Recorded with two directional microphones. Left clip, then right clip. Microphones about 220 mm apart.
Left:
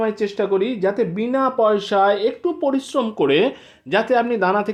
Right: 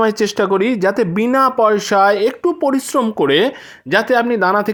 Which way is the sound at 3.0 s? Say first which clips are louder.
Right 2 dB; 20° right (ahead or behind).